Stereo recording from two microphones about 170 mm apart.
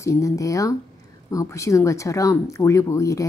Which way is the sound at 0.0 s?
20° left (ahead or behind).